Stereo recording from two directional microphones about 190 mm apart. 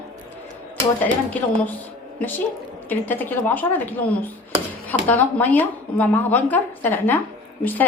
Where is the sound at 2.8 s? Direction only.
10° left (ahead or behind).